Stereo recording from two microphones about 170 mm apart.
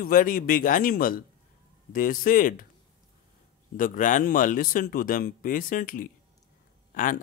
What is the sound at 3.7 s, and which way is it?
Speech, 50° left (ahead or behind).